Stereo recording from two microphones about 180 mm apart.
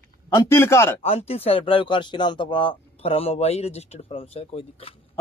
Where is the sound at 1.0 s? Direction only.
35° left (ahead or behind).